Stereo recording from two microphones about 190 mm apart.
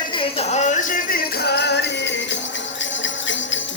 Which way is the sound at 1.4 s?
60° left (ahead or behind).